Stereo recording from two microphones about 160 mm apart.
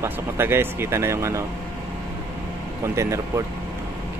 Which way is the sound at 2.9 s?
20° right (ahead or behind).